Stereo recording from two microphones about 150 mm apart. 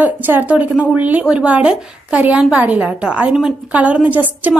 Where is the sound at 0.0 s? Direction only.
10° right (ahead or behind).